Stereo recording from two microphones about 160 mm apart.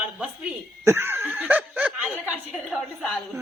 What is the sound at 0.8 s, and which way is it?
Speech, 15° right (ahead or behind).